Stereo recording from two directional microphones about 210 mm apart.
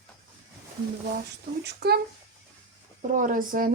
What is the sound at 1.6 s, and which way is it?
Speech, 50° right (ahead or behind).